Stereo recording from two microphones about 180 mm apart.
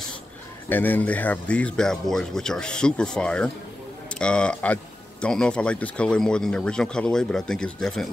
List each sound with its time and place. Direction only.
0.7 s speech: 10° left (ahead or behind)